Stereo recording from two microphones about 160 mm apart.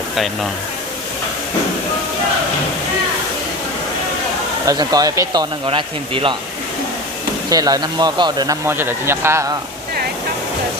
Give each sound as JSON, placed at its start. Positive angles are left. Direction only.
{"t": 4.6, "sound": "speech", "side_deg": -25}
{"t": 7.5, "sound": "speech", "side_deg": -25}